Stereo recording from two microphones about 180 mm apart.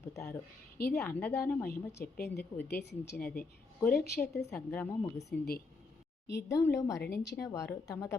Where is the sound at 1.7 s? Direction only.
60° left (ahead or behind).